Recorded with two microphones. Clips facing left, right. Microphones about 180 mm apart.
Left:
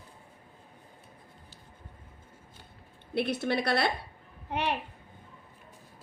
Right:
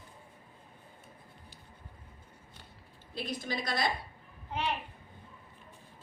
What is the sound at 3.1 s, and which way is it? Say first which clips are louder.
A woman's voice: left 8 dB; 70° left (ahead or behind).